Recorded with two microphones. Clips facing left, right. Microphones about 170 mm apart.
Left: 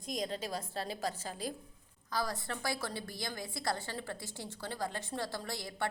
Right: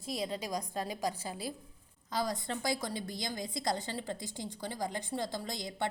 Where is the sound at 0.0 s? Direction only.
5° right (ahead or behind).